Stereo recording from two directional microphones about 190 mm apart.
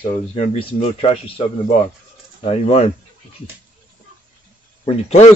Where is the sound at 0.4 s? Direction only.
30° left (ahead or behind).